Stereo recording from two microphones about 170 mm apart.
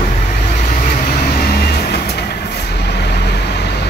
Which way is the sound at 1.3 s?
65° left (ahead or behind).